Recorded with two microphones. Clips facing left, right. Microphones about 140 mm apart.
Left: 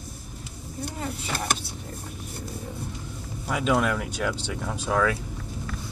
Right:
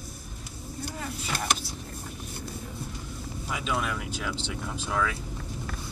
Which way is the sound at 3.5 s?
55° left (ahead or behind).